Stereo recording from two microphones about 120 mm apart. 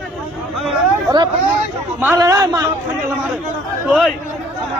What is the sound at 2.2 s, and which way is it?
Speech, 25° right (ahead or behind).